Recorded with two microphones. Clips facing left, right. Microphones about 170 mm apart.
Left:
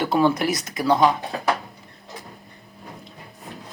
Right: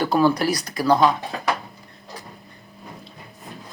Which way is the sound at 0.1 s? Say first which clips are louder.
Even; 25° left (ahead or behind).